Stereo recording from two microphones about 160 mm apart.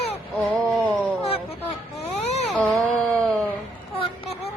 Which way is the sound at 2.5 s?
5° left (ahead or behind).